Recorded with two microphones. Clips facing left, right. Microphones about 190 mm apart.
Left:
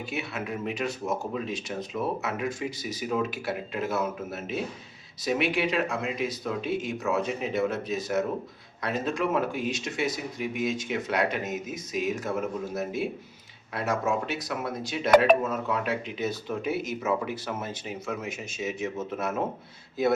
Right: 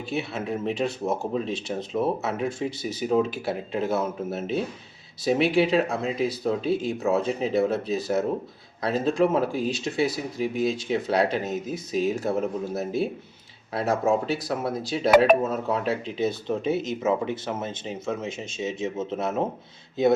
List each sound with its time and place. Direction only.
0.1 s speech: 30° right (ahead or behind)